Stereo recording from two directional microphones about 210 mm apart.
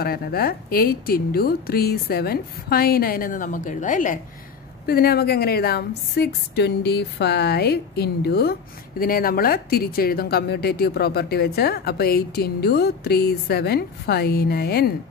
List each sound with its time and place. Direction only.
0.0 s speech: 45° left (ahead or behind)